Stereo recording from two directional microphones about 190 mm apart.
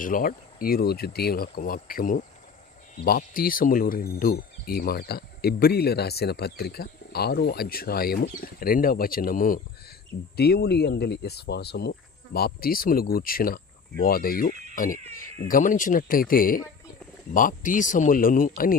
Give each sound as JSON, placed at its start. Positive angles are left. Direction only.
{"t": 0.0, "sound": "speech", "side_deg": 45}
{"t": 10.3, "sound": "speech", "side_deg": 55}